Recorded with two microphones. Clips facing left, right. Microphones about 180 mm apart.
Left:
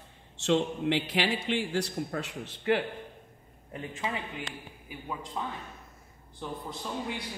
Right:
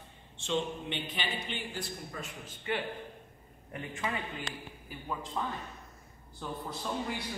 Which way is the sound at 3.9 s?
20° left (ahead or behind).